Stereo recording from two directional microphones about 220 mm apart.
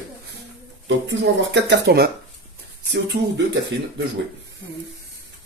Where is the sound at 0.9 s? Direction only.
55° right (ahead or behind).